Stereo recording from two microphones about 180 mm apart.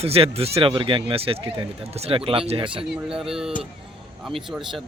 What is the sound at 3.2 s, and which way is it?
Speech, 5° right (ahead or behind).